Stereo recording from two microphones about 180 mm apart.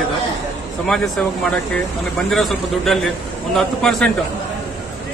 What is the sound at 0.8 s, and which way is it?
Speech, centre (ahead or behind).